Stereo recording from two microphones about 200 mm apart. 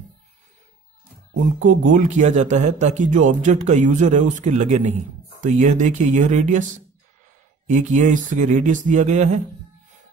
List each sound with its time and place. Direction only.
1.6 s speech: 40° right (ahead or behind)
7.6 s speech: 40° right (ahead or behind)